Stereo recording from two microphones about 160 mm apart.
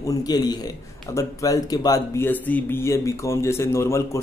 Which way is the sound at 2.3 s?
10° left (ahead or behind).